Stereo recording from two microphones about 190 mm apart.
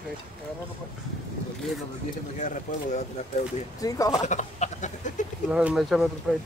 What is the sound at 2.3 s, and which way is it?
Chicken, 40° left (ahead or behind).